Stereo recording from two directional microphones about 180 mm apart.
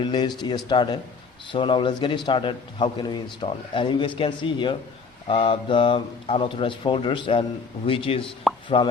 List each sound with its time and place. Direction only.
0.0 s a man's voice: 25° left (ahead or behind)